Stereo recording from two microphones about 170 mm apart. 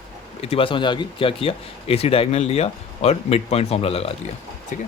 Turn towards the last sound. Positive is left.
turn(degrees=50)  # may be behind; listen again after turning